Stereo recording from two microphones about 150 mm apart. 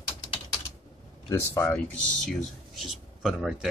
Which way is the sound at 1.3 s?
20° left (ahead or behind).